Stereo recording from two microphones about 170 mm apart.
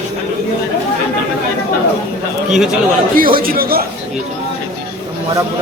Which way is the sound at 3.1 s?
55° right (ahead or behind).